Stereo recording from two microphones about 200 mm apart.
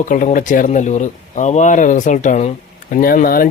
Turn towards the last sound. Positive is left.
turn(degrees=45)  # may be behind; listen again after turning